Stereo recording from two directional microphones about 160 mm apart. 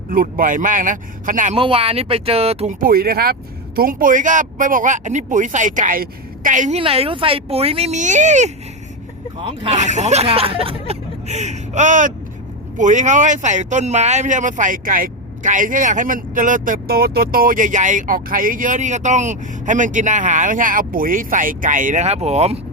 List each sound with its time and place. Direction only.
0.1 s speech: 60° right (ahead or behind)
1.5 s speech: 35° right (ahead or behind)
2.8 s speech: 70° right (ahead or behind); by 6.7 s 50° right (ahead or behind)
6.7 s speech: 35° right (ahead or behind)